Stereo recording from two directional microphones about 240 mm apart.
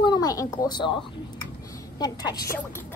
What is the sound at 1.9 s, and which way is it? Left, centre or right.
Speech, centre.